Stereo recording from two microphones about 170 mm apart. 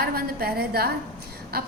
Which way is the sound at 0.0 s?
60° right (ahead or behind).